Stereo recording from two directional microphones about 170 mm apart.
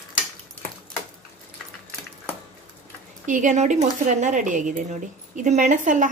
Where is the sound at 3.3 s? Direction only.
45° right (ahead or behind).